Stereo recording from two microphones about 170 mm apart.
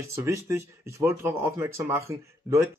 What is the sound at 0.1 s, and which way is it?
Speech, 15° right (ahead or behind).